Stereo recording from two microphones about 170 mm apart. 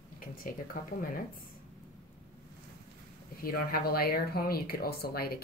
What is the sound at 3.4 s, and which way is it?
Speech, 60° left (ahead or behind).